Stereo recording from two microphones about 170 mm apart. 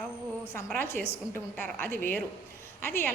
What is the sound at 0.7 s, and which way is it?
Speech, 10° left (ahead or behind).